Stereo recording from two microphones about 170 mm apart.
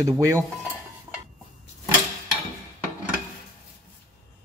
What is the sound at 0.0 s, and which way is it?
Dishes, 20° right (ahead or behind).